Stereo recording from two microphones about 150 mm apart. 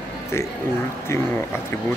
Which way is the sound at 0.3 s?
20° left (ahead or behind).